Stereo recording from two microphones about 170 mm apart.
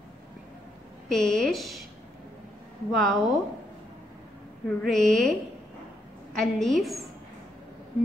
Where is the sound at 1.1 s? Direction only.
Centre (ahead or behind).